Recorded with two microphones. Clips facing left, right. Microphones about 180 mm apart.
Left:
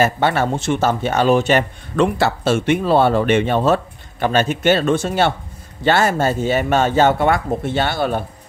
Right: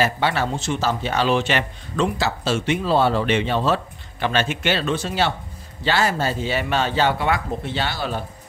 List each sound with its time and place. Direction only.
0.0 s speech: 50° left (ahead or behind)
2.0 s speech: 55° left (ahead or behind)